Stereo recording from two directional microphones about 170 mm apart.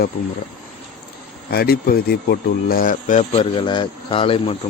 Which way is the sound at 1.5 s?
60° left (ahead or behind).